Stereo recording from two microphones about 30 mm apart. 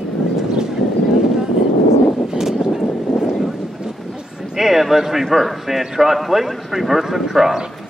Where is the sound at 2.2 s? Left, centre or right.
Centre.